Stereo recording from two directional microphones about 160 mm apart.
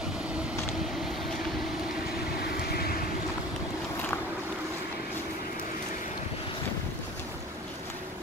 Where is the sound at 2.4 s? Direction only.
75° left (ahead or behind).